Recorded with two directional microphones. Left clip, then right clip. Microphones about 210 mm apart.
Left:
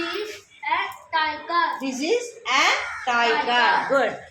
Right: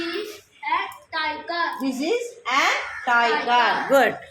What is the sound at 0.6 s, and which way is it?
A woman's voice, centre (ahead or behind).